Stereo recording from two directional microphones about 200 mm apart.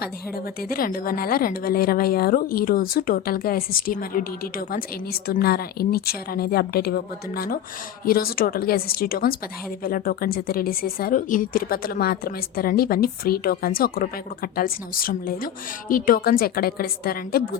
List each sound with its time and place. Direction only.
0.7 s a woman's voice: 45° left (ahead or behind)